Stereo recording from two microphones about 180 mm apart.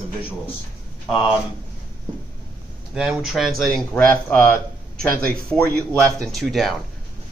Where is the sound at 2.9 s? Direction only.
Centre (ahead or behind).